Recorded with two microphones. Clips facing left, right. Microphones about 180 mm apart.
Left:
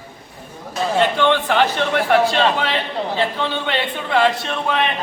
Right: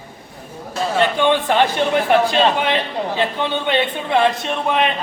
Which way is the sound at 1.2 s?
15° right (ahead or behind).